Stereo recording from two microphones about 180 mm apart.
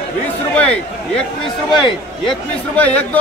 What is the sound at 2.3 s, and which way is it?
Speech, 10° left (ahead or behind).